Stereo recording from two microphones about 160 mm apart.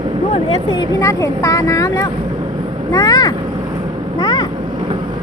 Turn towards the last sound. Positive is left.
turn(degrees=30)  # may be behind; listen again after turning